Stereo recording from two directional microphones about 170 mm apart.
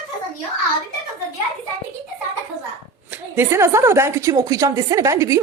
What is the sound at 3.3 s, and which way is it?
A woman's voice, 15° right (ahead or behind).